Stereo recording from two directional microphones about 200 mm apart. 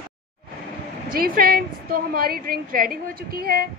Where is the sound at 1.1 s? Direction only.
45° right (ahead or behind).